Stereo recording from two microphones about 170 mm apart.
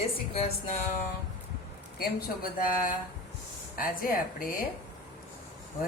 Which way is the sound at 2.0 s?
60° left (ahead or behind).